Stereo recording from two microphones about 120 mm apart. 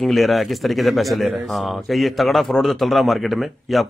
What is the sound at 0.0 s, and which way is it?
Speech, centre (ahead or behind).